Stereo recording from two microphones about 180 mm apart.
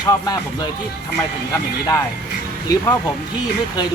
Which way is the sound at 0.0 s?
20° left (ahead or behind).